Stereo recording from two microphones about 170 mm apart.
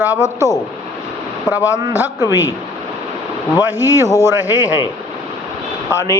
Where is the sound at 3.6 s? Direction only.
15° right (ahead or behind).